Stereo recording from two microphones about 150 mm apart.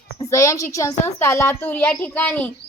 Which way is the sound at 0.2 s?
20° left (ahead or behind).